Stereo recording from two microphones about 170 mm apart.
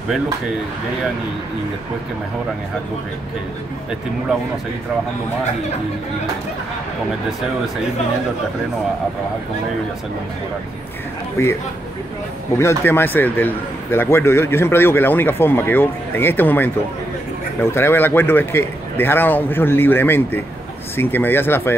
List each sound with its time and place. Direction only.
11.4 s a man's voice: 15° left (ahead or behind)
12.5 s a man's voice: 15° left (ahead or behind)